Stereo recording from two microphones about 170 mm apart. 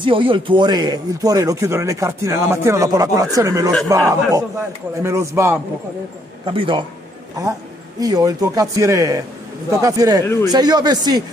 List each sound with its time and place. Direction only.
0.0 s a man's voice: 30° right (ahead or behind)
6.4 s speech: 30° right (ahead or behind)
8.0 s speech: 20° right (ahead or behind)